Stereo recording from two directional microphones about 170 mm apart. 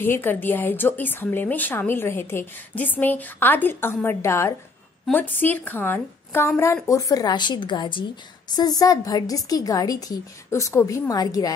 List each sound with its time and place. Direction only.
0.0 s a woman's voice: 10° left (ahead or behind)